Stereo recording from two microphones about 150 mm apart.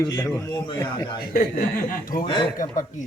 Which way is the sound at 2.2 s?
35° left (ahead or behind).